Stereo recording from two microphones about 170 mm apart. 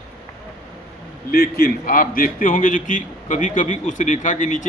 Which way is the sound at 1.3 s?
65° left (ahead or behind).